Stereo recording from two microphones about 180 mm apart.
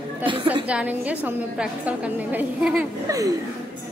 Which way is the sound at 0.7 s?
5° right (ahead or behind).